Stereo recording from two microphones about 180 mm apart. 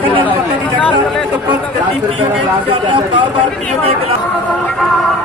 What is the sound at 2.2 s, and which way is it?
Speech, 30° right (ahead or behind).